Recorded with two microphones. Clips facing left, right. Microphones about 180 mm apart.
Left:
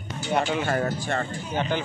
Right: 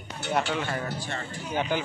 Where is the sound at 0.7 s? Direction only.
45° left (ahead or behind).